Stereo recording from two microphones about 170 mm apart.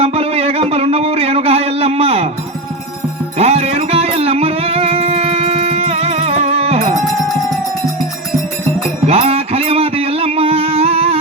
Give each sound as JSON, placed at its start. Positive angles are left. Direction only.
{"t": 0.0, "sound": "a sound", "side_deg": -35}
{"t": 3.3, "sound": "music", "side_deg": -35}
{"t": 9.0, "sound": "music", "side_deg": -35}